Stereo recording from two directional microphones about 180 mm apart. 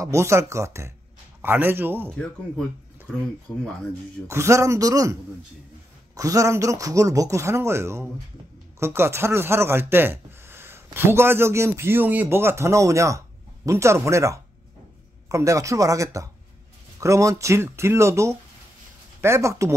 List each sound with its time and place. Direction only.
0.0 s speech: 15° right (ahead or behind)
4.3 s speech: 15° right (ahead or behind)
6.1 s speech: 20° right (ahead or behind)